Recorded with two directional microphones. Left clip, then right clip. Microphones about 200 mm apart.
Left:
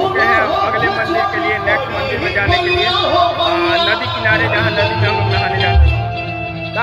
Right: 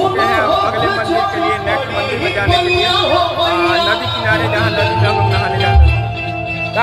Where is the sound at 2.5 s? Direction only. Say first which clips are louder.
Right 3 dB; 50° right (ahead or behind).